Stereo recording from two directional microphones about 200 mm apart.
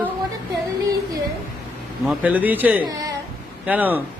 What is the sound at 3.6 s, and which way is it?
Speech, 10° right (ahead or behind).